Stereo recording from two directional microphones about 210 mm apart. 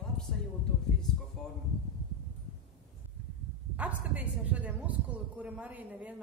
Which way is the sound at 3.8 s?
5° right (ahead or behind).